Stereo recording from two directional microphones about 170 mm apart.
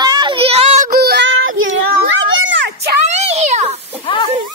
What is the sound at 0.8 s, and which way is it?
Child singing, 65° right (ahead or behind).